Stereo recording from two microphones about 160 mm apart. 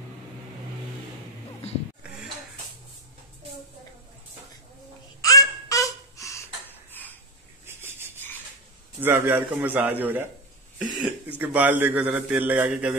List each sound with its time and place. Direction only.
5.2 s babbling: 20° left (ahead or behind)
9.0 s a man's voice: 15° right (ahead or behind)